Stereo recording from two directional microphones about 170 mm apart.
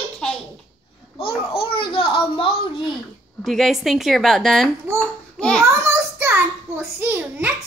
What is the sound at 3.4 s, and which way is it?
A woman's voice, centre (ahead or behind).